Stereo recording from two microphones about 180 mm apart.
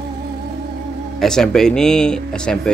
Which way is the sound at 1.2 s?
5° left (ahead or behind).